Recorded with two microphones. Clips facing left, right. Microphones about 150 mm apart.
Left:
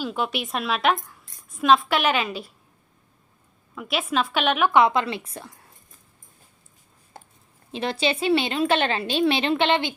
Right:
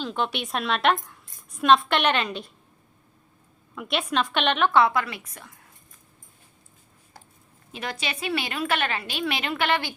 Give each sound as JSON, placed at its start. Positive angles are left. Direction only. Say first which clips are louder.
{"t": 0.0, "sound": "speech", "louder": "left 1 dB", "side_deg": 5}
{"t": 3.8, "sound": "a woman's voice", "louder": "left 1 dB", "side_deg": 5}
{"t": 7.7, "sound": "a woman's voice", "louder": "left 8 dB", "side_deg": 30}